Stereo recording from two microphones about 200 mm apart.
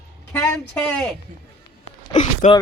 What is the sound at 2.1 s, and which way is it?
Gasp, 35° left (ahead or behind).